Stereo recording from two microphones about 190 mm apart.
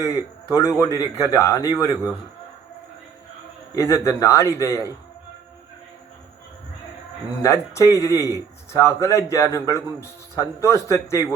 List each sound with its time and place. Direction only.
0.0 s a man's voice: 15° left (ahead or behind)
3.8 s a man's voice: 15° left (ahead or behind)
7.4 s a man's voice: 15° left (ahead or behind)